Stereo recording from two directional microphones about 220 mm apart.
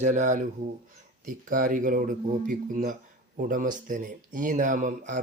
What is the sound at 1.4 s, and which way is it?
Speech, 40° right (ahead or behind).